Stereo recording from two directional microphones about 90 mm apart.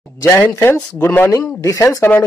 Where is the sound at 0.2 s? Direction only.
25° left (ahead or behind).